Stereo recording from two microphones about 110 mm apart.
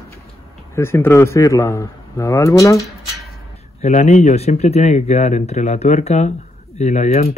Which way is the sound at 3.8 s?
85° left.